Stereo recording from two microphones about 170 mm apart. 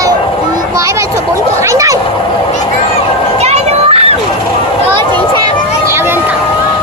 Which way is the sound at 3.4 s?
40° right (ahead or behind).